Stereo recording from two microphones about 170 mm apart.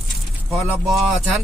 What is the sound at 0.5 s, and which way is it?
Speech, centre (ahead or behind).